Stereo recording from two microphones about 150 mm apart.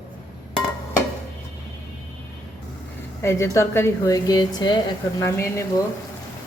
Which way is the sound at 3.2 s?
20° left (ahead or behind).